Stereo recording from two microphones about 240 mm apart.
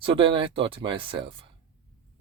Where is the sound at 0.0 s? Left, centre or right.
Right.